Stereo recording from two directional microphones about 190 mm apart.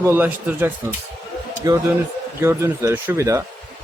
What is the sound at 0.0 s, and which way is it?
Speech, 10° right (ahead or behind).